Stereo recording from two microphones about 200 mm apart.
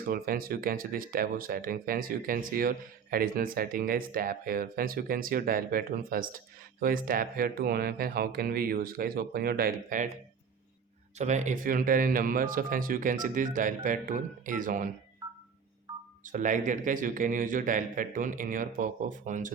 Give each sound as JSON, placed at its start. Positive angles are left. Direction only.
{"t": 0.0, "sound": "speech", "side_deg": -45}
{"t": 11.2, "sound": "speech", "side_deg": -35}
{"t": 16.2, "sound": "speech", "side_deg": -40}